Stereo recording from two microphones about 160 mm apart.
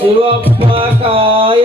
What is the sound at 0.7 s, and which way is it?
Music, 35° right (ahead or behind).